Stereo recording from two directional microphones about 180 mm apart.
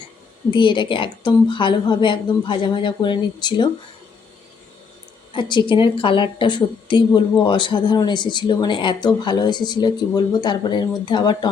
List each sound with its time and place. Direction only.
0.5 s a woman's voice: 25° left (ahead or behind)
5.3 s a woman's voice: 25° left (ahead or behind)